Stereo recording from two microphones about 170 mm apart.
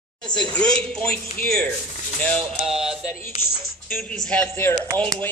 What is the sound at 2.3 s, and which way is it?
Music, 5° right (ahead or behind).